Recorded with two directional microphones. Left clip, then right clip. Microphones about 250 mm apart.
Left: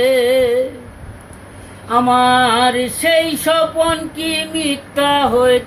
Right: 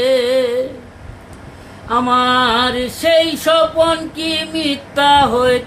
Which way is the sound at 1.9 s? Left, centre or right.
Centre.